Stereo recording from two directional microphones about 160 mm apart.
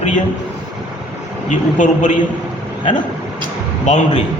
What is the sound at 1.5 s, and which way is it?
Speech, 50° left (ahead or behind).